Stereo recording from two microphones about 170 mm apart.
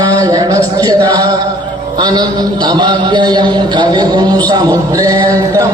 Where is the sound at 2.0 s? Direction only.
25° right (ahead or behind).